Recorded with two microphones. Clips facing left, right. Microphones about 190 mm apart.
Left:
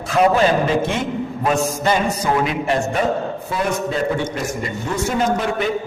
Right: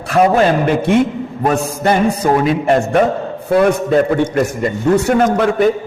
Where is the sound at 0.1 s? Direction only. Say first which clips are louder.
Right 3 dB; 60° right (ahead or behind).